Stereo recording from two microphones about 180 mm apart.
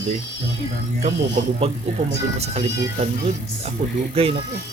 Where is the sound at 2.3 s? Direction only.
35° right (ahead or behind).